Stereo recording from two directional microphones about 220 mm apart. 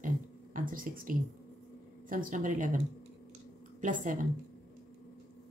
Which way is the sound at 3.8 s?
35° right (ahead or behind).